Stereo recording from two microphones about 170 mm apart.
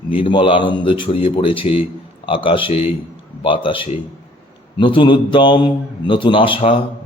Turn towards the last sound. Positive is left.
turn(degrees=30)  # may be behind; listen again after turning